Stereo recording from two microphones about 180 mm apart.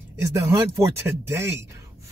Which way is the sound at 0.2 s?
15° right (ahead or behind).